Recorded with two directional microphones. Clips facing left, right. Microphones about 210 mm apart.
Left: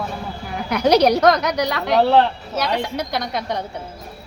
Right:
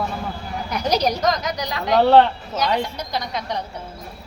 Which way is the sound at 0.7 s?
65° left (ahead or behind).